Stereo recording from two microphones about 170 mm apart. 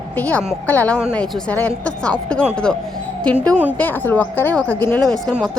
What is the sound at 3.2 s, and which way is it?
A woman's voice, 5° left (ahead or behind).